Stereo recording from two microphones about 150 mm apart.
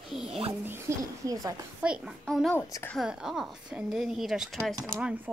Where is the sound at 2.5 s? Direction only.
15° left (ahead or behind).